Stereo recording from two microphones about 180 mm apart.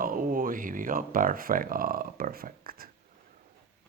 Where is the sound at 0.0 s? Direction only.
50° right (ahead or behind).